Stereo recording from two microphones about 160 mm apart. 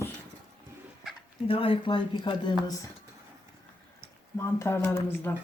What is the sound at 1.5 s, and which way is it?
Speech, 35° left (ahead or behind).